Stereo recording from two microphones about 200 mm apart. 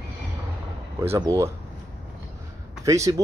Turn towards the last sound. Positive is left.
turn(degrees=-15)  # may be behind; listen again after turning